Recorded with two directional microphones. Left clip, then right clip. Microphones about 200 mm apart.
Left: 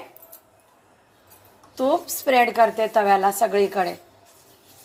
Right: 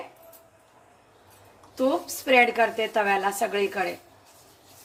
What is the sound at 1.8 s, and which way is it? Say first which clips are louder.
A woman's voice: left 4 dB; 20° left (ahead or behind).